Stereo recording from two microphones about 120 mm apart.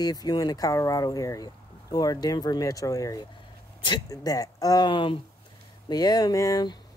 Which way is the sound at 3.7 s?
40° left (ahead or behind).